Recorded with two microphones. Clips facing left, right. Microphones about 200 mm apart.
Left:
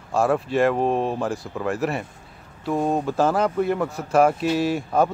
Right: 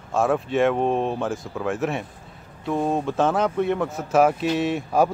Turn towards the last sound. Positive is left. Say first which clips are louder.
# even
turn(degrees=-5)  # may be behind; listen again after turning